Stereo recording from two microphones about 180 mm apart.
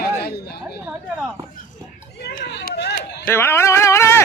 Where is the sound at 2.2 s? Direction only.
65° left (ahead or behind).